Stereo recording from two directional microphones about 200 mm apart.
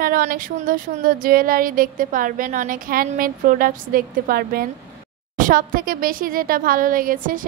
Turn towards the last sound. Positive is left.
turn(degrees=-45)  # may be behind; listen again after turning